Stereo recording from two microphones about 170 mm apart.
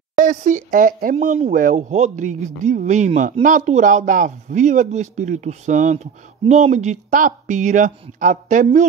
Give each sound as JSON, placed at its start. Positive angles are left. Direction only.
{"t": 0.2, "sound": "speech", "side_deg": -50}